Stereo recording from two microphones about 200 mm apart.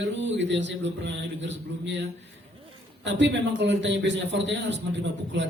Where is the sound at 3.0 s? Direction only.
60° right (ahead or behind).